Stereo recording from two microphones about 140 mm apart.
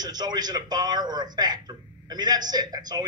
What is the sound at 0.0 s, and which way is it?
A man's voice, 30° right (ahead or behind).